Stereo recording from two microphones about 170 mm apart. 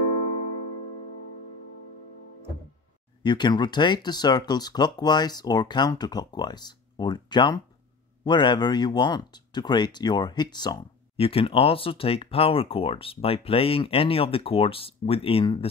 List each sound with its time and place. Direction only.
3.2 s speech: 25° left (ahead or behind)